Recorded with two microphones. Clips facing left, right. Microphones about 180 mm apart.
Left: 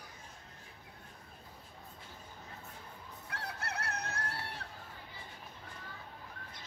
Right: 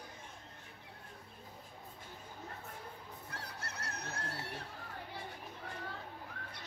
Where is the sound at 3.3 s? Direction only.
60° left (ahead or behind).